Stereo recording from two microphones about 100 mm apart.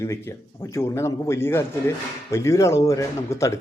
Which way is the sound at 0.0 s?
30° left (ahead or behind).